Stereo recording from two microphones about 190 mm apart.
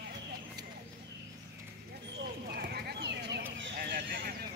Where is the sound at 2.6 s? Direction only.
60° right (ahead or behind).